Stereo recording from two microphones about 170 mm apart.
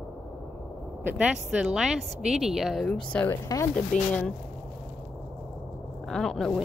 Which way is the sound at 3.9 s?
45° left (ahead or behind).